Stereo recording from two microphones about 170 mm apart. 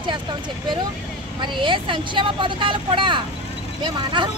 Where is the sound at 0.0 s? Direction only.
30° right (ahead or behind).